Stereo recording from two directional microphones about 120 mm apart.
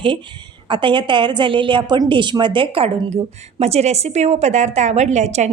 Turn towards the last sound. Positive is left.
turn(degrees=-75)  # may be behind; listen again after turning